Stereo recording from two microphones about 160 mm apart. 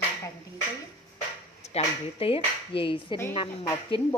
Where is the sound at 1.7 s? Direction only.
35° left (ahead or behind).